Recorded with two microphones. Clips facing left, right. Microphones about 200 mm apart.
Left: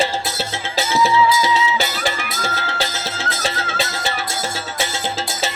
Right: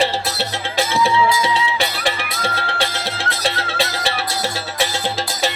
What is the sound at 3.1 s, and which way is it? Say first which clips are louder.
Music: even; 35° right (ahead or behind).